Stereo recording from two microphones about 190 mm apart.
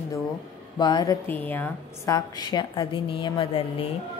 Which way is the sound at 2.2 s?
20° left (ahead or behind).